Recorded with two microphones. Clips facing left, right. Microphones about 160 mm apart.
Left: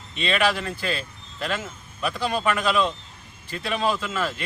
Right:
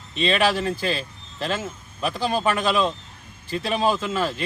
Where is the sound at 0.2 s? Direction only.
30° right (ahead or behind).